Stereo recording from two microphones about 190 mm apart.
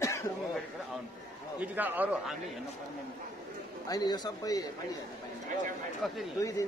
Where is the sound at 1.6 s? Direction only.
10° right (ahead or behind).